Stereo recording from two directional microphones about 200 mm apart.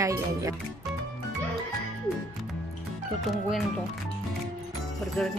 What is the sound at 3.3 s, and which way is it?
Speech, centre (ahead or behind).